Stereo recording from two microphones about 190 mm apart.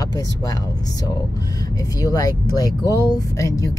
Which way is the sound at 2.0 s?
20° left (ahead or behind).